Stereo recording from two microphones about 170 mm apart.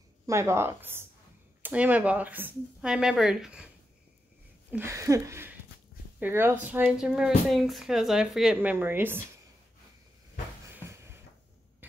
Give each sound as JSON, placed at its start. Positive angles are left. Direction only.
{"t": 0.3, "sound": "speech", "side_deg": -15}